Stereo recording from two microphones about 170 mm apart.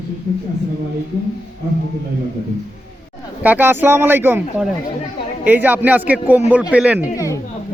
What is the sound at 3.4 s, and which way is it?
A man's voice, 10° right (ahead or behind).